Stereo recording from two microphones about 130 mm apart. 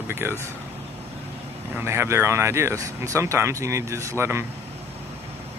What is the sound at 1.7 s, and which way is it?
Speech, 20° right (ahead or behind).